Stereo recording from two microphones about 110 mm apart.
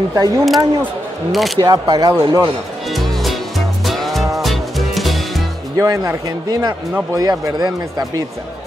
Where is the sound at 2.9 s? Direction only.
Centre (ahead or behind).